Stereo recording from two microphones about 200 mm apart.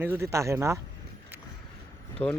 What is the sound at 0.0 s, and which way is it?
Speech, 10° right (ahead or behind).